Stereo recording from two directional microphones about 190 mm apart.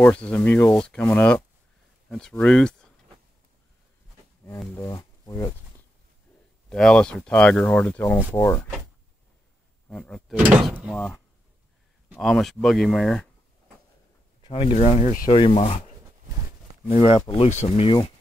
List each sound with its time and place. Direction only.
0.0 s speech: 5° left (ahead or behind)
4.5 s speech: 10° left (ahead or behind)
6.7 s speech: 5° left (ahead or behind)
9.8 s speech: 5° left (ahead or behind)
10.3 s speech: 5° right (ahead or behind)
12.1 s speech: centre (ahead or behind)
14.4 s speech: 30° left (ahead or behind)
15.2 s speech: 30° left (ahead or behind)
16.9 s speech: 30° left (ahead or behind)